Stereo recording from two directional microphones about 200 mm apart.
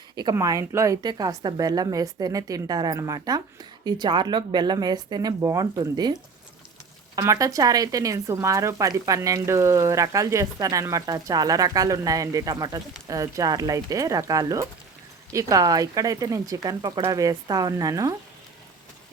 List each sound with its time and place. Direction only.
0.2 s speech: 20° right (ahead or behind)
7.2 s speech: 15° right (ahead or behind)